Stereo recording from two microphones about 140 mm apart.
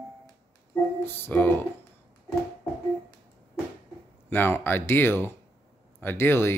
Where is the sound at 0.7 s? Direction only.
15° left (ahead or behind).